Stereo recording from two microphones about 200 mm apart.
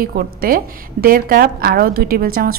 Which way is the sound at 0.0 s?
45° right (ahead or behind).